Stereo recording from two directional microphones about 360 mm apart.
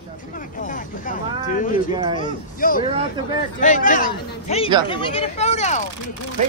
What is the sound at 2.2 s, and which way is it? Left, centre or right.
Speech, left.